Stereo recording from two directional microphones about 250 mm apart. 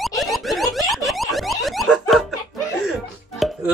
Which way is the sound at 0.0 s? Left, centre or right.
Centre.